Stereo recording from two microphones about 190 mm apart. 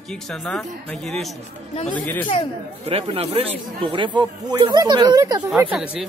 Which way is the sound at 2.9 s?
30° right (ahead or behind).